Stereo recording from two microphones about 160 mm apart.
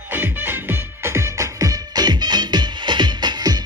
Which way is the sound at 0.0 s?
15° right (ahead or behind).